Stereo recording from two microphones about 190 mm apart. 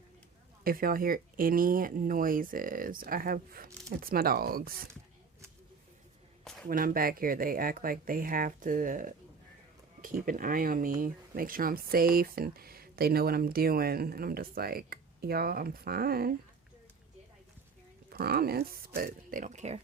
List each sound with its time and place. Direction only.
0.6 s speech: 50° right (ahead or behind)
6.4 s a sound: centre (ahead or behind)
6.7 s speech: 50° right (ahead or behind)
18.1 s speech: 55° right (ahead or behind); by 19.8 s 35° right (ahead or behind)